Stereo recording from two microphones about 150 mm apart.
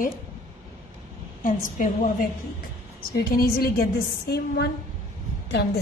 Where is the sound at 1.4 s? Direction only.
65° left (ahead or behind).